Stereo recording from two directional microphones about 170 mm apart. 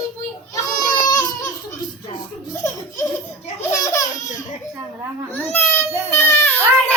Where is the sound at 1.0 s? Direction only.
20° left (ahead or behind).